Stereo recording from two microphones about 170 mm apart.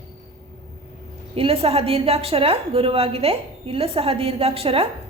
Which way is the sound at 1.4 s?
35° right (ahead or behind).